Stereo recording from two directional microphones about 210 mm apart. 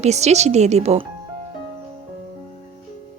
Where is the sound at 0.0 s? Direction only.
30° right (ahead or behind).